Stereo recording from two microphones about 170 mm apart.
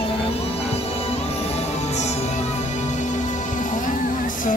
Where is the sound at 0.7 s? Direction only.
35° left (ahead or behind).